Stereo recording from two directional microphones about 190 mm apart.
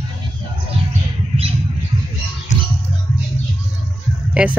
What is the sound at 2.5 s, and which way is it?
Music, 40° left (ahead or behind).